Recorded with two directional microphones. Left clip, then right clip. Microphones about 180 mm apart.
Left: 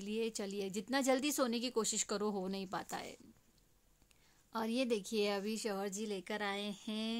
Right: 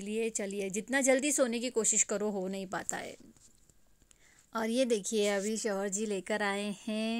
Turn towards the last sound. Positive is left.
turn(degrees=-15)  # may be behind; listen again after turning